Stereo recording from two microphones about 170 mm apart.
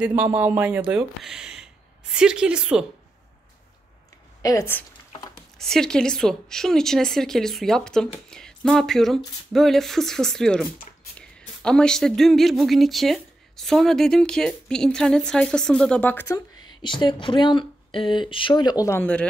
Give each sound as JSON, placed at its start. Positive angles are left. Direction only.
{"t": 0.0, "sound": "speech", "side_deg": -10}
{"t": 4.4, "sound": "speech", "side_deg": 20}
{"t": 5.6, "sound": "speech", "side_deg": 5}
{"t": 16.8, "sound": "speech", "side_deg": 25}